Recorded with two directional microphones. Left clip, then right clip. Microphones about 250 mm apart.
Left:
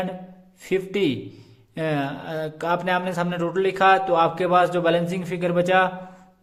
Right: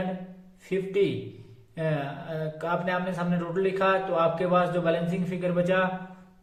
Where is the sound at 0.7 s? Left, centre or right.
Left.